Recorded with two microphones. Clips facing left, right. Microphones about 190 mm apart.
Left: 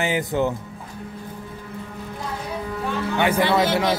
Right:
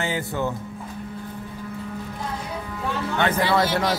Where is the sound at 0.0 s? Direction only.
15° left (ahead or behind).